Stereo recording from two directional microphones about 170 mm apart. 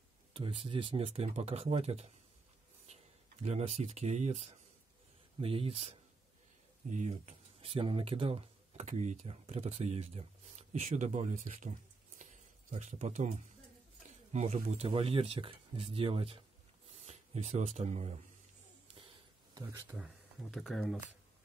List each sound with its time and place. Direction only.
0.3 s speech: 30° right (ahead or behind); by 11.7 s 45° right (ahead or behind)
12.2 s a sound: 45° right (ahead or behind)
14.3 s speech: 40° right (ahead or behind)
20.5 s speech: centre (ahead or behind)